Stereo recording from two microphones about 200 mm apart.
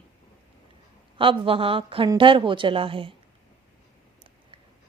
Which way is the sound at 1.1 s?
25° right (ahead or behind).